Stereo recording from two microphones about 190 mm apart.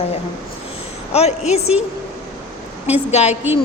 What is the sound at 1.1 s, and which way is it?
Speech, 35° left (ahead or behind).